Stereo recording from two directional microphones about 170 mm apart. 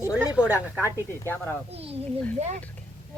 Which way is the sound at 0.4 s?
15° left (ahead or behind).